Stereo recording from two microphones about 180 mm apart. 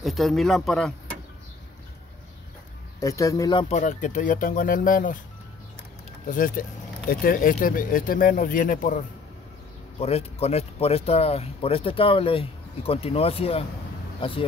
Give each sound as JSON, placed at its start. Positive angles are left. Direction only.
{"t": 0.0, "sound": "speech", "side_deg": 0}
{"t": 3.0, "sound": "speech", "side_deg": 20}
{"t": 3.7, "sound": "speech", "side_deg": 45}
{"t": 6.2, "sound": "speech", "side_deg": 50}
{"t": 9.9, "sound": "speech", "side_deg": 35}